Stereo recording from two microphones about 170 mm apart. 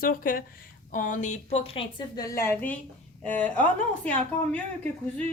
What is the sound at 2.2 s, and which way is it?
A woman's voice, 15° left (ahead or behind).